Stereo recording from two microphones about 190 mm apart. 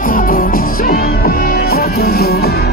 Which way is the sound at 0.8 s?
50° left (ahead or behind).